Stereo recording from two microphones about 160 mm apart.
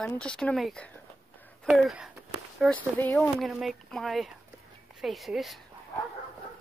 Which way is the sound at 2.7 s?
10° left (ahead or behind).